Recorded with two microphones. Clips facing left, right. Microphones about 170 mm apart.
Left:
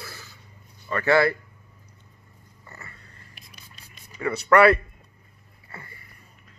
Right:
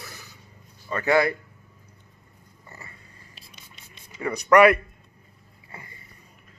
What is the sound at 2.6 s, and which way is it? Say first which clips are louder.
Cat: even; 20° right (ahead or behind).